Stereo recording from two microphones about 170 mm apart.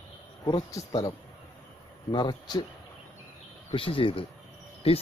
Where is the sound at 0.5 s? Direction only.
20° left (ahead or behind).